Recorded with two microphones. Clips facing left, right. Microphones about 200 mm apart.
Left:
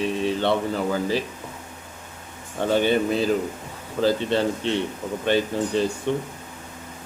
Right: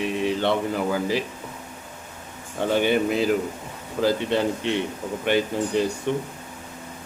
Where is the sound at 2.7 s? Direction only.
15° right (ahead or behind).